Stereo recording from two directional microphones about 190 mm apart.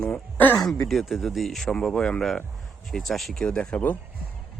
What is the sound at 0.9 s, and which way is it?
Speech, centre (ahead or behind).